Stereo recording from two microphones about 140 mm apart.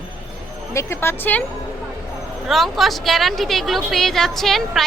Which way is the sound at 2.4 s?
Centre (ahead or behind).